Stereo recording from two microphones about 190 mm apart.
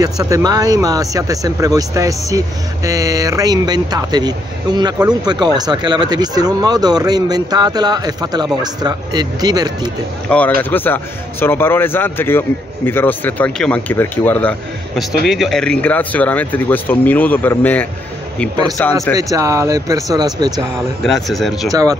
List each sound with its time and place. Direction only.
0.0 s speech: 20° right (ahead or behind)
10.3 s a man's voice: 10° left (ahead or behind)
15.2 s a man's voice: centre (ahead or behind)
19.3 s speech: 15° right (ahead or behind)
21.0 s speech: centre (ahead or behind)